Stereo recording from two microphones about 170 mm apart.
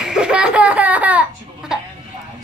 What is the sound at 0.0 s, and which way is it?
Laughter, 5° right (ahead or behind).